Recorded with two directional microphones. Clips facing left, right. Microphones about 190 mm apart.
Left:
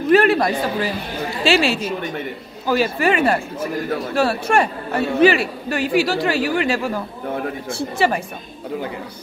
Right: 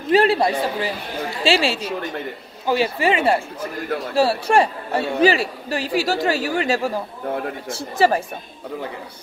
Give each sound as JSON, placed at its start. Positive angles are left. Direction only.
{"t": 0.1, "sound": "a man's voice", "side_deg": -30}